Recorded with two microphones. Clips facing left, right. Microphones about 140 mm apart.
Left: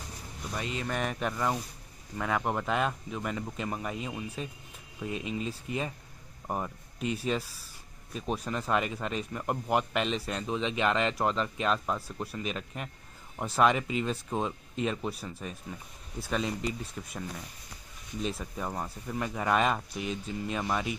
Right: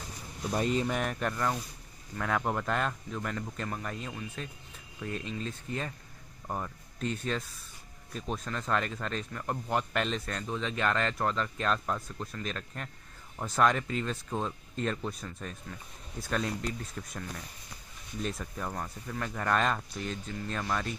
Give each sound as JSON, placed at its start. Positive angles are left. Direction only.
{"t": 0.5, "sound": "speech", "side_deg": -40}
{"t": 0.8, "sound": "speech", "side_deg": 0}